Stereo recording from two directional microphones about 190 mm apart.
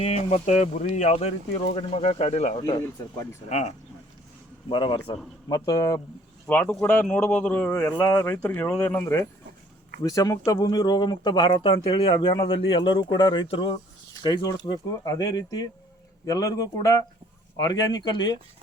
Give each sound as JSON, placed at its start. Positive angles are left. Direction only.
{"t": 0.0, "sound": "speech", "side_deg": 35}